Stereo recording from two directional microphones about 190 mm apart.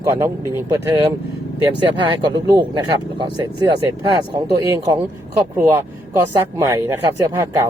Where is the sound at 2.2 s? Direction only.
25° right (ahead or behind).